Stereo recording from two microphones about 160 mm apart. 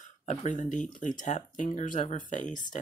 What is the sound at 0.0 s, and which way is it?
Speech, 50° left (ahead or behind).